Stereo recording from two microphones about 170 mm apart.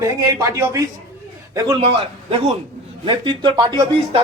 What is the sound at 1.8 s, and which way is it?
A man's voice, 30° right (ahead or behind).